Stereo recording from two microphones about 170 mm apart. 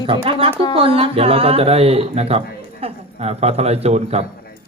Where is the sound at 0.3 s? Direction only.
35° right (ahead or behind).